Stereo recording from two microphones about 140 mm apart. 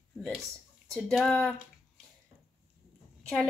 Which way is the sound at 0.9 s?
Centre (ahead or behind).